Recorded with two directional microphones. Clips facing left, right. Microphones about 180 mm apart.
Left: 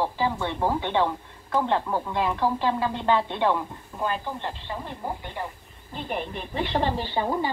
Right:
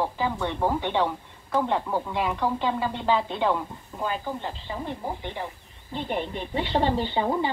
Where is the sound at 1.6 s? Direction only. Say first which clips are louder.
Left 1 dB; 10° right (ahead or behind).